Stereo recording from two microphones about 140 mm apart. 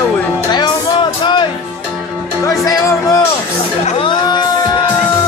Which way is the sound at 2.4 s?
25° left (ahead or behind).